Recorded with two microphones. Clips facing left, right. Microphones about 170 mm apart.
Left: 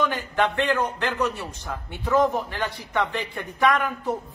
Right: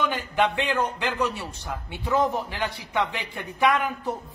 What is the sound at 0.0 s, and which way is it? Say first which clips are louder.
A man's voice: left 1 dB; 10° right (ahead or behind).